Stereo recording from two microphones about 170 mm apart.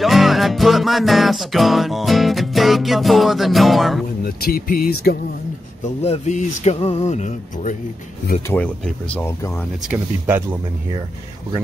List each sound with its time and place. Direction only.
0.0 s music: centre (ahead or behind)
4.2 s speech: 60° left (ahead or behind)
6.0 s speech: 40° left (ahead or behind)
8.5 s speech: 5° left (ahead or behind)
9.8 s speech: 10° right (ahead or behind)